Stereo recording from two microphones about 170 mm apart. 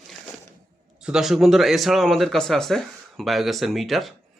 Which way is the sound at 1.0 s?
5° right (ahead or behind).